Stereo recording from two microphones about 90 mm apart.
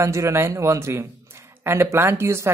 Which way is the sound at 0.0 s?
30° right (ahead or behind).